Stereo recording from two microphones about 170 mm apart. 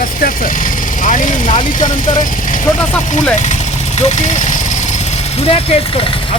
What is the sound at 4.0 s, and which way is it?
Speech, 45° left (ahead or behind).